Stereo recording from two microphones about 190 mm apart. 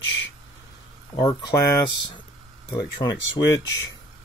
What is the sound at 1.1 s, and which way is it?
Speech, 20° left (ahead or behind).